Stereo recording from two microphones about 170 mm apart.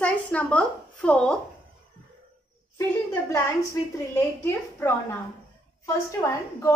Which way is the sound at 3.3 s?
15° left (ahead or behind).